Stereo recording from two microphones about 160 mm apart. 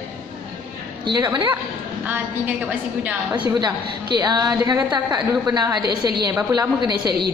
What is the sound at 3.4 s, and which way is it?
A woman's voice, 30° right (ahead or behind).